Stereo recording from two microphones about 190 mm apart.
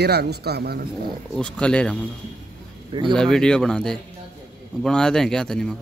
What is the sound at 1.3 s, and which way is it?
Speech, 5° left (ahead or behind).